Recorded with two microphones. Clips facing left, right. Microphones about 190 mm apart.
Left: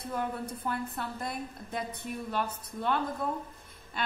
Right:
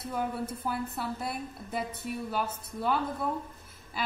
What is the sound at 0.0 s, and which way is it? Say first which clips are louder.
A woman's voice: right 1 dB; 5° right (ahead or behind).